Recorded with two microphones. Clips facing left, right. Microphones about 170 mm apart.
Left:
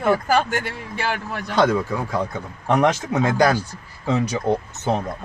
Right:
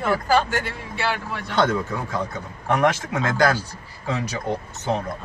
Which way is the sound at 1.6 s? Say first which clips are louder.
Left 3 dB; 10° left (ahead or behind).